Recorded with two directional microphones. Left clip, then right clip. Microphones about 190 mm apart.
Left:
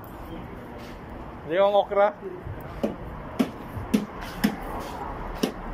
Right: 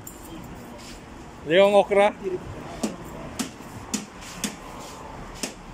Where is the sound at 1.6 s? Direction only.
30° right (ahead or behind).